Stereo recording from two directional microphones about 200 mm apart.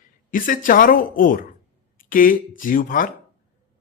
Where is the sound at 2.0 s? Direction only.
45° left (ahead or behind).